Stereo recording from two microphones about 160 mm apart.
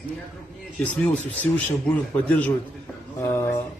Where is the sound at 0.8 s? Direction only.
10° left (ahead or behind).